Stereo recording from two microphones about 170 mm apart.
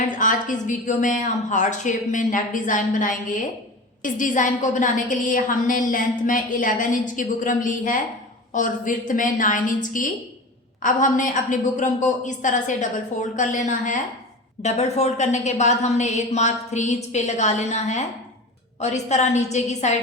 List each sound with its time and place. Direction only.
0.2 s a woman's voice: 50° left (ahead or behind)